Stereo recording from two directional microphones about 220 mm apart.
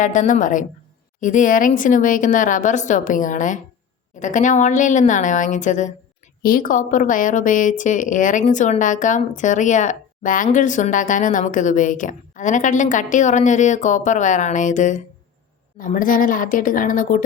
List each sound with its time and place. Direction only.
0.0 s a woman's voice: 35° left (ahead or behind)